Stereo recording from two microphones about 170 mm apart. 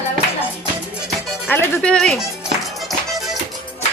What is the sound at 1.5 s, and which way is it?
Speech, 5° left (ahead or behind).